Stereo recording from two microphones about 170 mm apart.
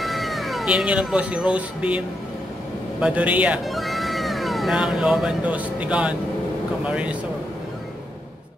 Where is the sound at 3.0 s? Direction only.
10° right (ahead or behind).